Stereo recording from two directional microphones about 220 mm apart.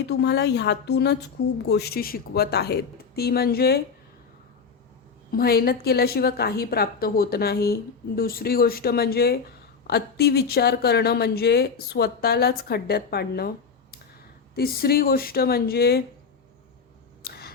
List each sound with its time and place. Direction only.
0.0 s a woman's voice: 50° left (ahead or behind)
5.3 s a woman's voice: 45° left (ahead or behind)
14.5 s a woman's voice: 45° left (ahead or behind)
17.2 s scissors: 45° left (ahead or behind)